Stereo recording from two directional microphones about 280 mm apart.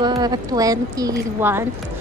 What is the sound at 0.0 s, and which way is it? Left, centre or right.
A woman's voice, centre.